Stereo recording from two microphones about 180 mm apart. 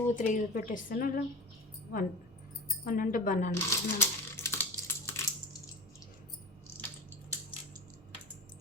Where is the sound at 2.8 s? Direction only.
50° left (ahead or behind).